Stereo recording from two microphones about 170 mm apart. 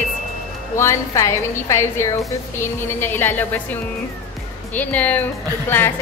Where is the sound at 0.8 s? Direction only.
15° left (ahead or behind).